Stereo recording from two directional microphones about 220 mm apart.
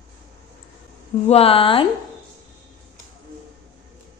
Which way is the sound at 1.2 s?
25° left (ahead or behind).